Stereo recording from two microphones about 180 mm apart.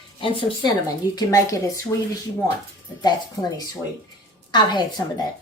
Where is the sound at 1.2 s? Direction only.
20° left (ahead or behind).